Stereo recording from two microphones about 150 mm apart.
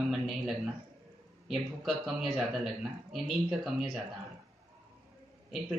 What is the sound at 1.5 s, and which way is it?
Speech, centre (ahead or behind).